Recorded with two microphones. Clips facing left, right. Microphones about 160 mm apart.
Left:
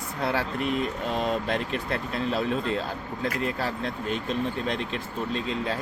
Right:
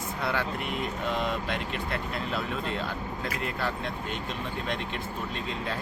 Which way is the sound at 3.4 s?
35° left (ahead or behind).